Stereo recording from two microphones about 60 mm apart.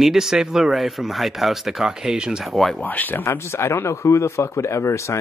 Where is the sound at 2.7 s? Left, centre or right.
Left.